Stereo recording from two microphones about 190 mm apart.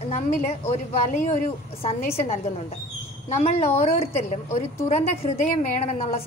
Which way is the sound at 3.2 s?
35° left (ahead or behind).